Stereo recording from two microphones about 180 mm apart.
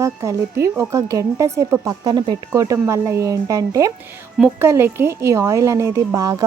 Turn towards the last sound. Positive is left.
turn(degrees=-20)  # may be behind; listen again after turning